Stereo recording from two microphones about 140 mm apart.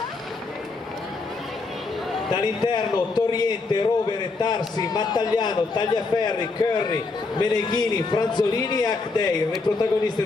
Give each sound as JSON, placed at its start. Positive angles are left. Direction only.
{"t": 2.3, "sound": "a man's voice", "side_deg": 30}